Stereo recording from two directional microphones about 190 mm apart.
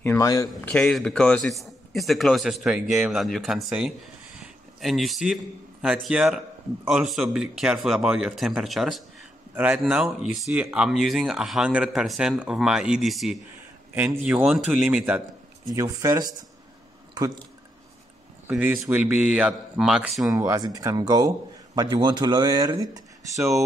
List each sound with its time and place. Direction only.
0.0 s speech: 15° left (ahead or behind)
0.7 s a man's voice: 5° left (ahead or behind)
15.7 s a man's voice: 15° right (ahead or behind)
18.5 s speech: 10° right (ahead or behind)
20.3 s speech: 15° right (ahead or behind)